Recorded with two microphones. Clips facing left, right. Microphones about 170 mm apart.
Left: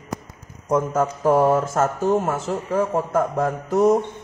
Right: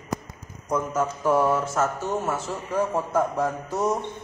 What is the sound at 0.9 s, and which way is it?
Speech, 45° left (ahead or behind).